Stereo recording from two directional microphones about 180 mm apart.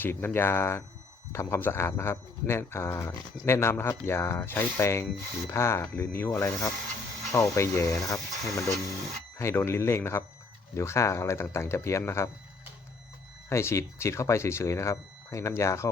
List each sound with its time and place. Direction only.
0.0 s speech: 10° left (ahead or behind)
13.5 s speech: 15° left (ahead or behind)